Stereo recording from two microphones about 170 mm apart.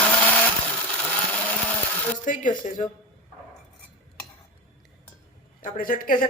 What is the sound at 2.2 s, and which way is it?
Speech, 50° left (ahead or behind).